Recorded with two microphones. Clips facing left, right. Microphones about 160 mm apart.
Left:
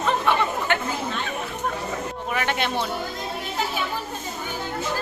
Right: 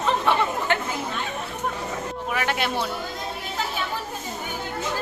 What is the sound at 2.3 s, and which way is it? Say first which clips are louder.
Speech: left 1 dB; 5° right (ahead or behind).